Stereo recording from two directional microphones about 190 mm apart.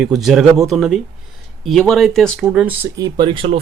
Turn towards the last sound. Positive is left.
turn(degrees=-25)  # may be behind; listen again after turning